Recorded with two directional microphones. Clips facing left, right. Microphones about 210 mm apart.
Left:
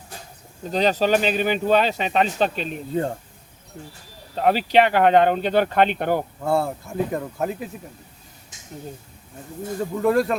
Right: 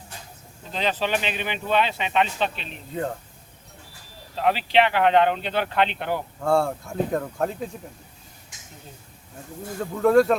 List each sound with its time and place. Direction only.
0.7 s speech: 40° left (ahead or behind)
4.4 s speech: 45° left (ahead or behind)
6.4 s speech: 5° left (ahead or behind)
10.0 s speech: centre (ahead or behind)